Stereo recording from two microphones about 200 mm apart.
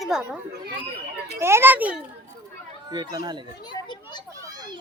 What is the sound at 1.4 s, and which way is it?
Speech, 10° right (ahead or behind).